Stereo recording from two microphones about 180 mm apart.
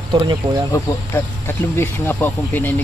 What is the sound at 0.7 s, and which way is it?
Speech, 15° left (ahead or behind).